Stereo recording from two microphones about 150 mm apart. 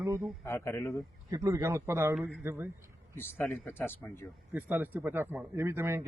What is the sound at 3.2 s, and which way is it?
Speech, 15° left (ahead or behind).